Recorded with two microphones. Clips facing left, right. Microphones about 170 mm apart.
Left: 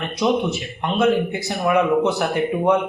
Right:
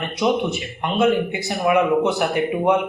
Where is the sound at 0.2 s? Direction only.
Centre (ahead or behind).